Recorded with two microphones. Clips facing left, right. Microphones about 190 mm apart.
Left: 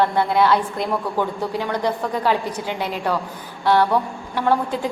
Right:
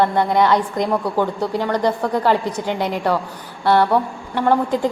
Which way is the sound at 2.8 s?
15° right (ahead or behind).